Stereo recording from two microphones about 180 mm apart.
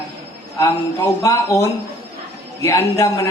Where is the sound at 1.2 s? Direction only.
15° left (ahead or behind).